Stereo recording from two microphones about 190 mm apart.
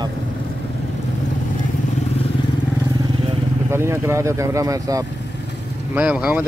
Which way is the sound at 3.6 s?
15° right (ahead or behind).